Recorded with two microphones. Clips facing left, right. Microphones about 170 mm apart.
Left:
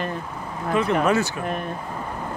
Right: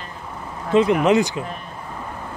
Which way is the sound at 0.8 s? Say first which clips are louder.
Right 5 dB; 20° right (ahead or behind).